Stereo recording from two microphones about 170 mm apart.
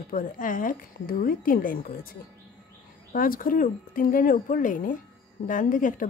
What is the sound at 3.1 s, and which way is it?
A woman's voice, 55° left (ahead or behind).